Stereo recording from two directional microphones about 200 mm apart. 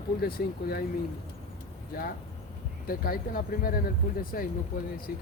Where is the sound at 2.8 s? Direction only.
45° left (ahead or behind).